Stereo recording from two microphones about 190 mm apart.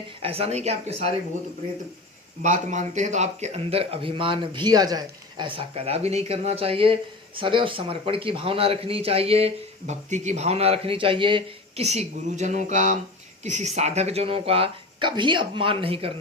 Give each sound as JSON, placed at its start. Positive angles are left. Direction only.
{"t": 0.2, "sound": "speech", "side_deg": -30}
{"t": 2.4, "sound": "speech", "side_deg": -40}